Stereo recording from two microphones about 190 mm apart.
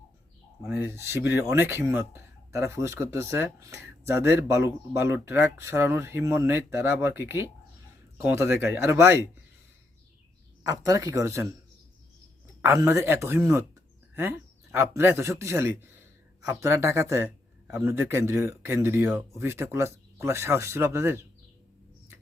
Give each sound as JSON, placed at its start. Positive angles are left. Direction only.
{"t": 0.7, "sound": "speech", "side_deg": -15}
{"t": 10.6, "sound": "speech", "side_deg": -15}
{"t": 12.6, "sound": "speech", "side_deg": -15}